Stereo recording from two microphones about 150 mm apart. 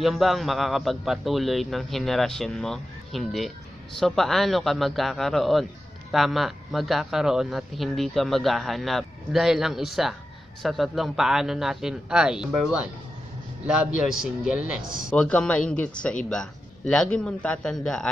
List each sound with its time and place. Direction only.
0.0 s a man's voice: centre (ahead or behind)
13.9 s a man's voice: 5° right (ahead or behind)
15.1 s speech: 5° left (ahead or behind)